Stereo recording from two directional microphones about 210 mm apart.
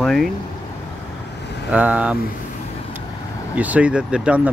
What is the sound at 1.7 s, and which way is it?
Speech, 5° right (ahead or behind).